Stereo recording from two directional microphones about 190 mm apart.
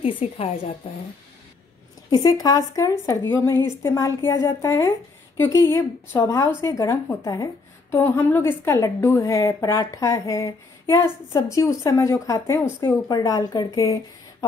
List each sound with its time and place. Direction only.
0.0 s a woman's voice: 30° left (ahead or behind)
2.0 s a woman's voice: 20° left (ahead or behind)